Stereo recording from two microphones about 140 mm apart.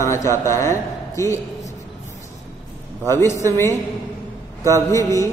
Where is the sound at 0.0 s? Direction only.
20° left (ahead or behind).